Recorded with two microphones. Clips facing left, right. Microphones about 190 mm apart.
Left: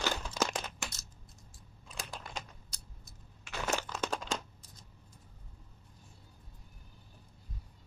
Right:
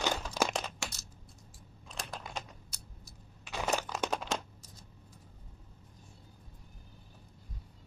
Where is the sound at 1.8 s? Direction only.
Centre (ahead or behind).